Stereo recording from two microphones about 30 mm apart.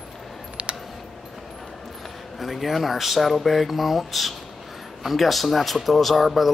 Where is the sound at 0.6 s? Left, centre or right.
Right.